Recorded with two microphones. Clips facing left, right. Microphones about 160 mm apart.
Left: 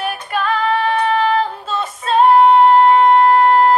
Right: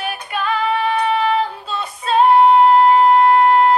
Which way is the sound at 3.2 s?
40° left (ahead or behind).